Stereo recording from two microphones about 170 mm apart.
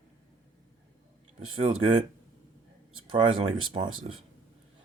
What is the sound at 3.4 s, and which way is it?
Speech, 30° right (ahead or behind).